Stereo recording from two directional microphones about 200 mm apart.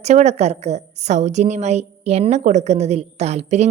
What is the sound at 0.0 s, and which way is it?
A woman's voice, 35° right (ahead or behind).